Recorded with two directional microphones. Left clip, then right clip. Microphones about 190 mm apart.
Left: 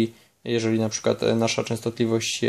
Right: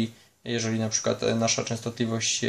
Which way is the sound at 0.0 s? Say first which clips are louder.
Left 6 dB; 45° left (ahead or behind).